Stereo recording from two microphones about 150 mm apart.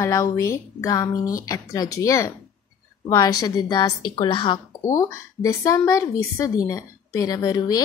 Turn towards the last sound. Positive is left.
turn(degrees=25)  # may be behind; listen again after turning